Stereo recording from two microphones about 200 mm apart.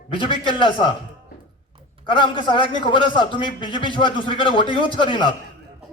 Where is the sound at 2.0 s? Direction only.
25° left (ahead or behind).